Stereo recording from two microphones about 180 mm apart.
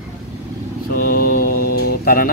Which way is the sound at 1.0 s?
55° left (ahead or behind).